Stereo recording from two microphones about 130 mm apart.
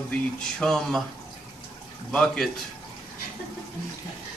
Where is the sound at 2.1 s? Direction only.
5° left (ahead or behind).